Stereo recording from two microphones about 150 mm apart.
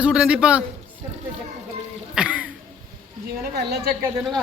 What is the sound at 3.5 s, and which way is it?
Speech, 90° right.